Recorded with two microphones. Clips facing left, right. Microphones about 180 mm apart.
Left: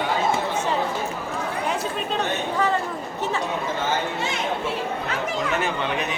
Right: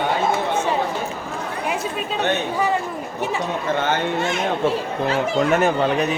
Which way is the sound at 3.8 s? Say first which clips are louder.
Right 4 dB; 55° right (ahead or behind).